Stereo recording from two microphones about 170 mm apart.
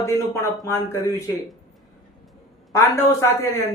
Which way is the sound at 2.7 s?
15° left (ahead or behind).